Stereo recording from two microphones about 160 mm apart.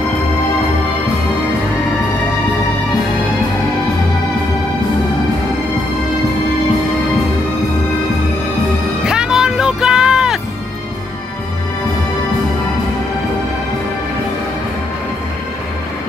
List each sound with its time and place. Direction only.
9.0 s music: 5° right (ahead or behind)